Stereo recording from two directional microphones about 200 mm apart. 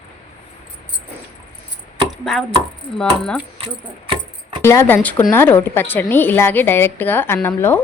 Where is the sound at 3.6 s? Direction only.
25° right (ahead or behind).